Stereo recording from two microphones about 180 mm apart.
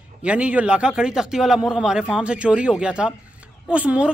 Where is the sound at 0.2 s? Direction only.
5° right (ahead or behind).